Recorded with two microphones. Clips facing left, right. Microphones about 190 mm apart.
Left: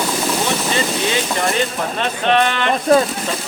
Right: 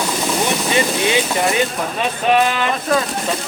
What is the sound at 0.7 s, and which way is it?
Speech, 15° right (ahead or behind).